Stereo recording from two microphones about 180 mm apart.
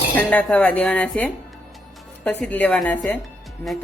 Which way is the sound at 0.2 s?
5° left (ahead or behind).